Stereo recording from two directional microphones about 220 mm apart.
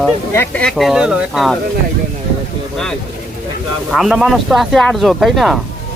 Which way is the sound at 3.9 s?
Centre (ahead or behind).